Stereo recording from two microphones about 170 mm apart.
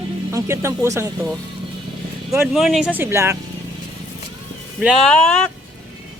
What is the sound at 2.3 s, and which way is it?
Speech, centre (ahead or behind).